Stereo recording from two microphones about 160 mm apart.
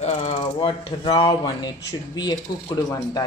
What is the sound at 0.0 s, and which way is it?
Mechanisms, 45° left (ahead or behind).